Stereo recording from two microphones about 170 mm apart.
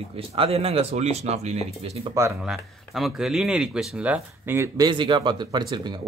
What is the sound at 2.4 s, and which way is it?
Speech, centre (ahead or behind).